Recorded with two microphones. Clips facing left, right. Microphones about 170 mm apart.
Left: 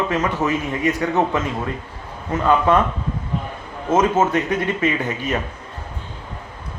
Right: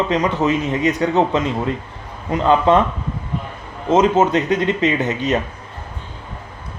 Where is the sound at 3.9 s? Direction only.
20° right (ahead or behind).